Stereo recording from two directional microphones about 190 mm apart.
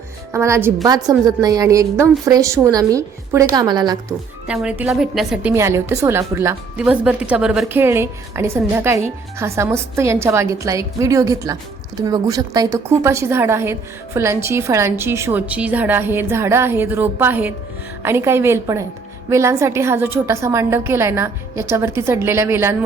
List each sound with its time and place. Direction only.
0.3 s a woman's voice: 15° right (ahead or behind)
4.4 s a woman's voice: 5° right (ahead or behind)